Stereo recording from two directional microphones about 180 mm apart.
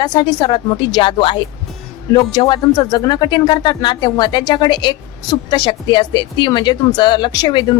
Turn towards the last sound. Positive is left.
turn(degrees=25)  # may be behind; listen again after turning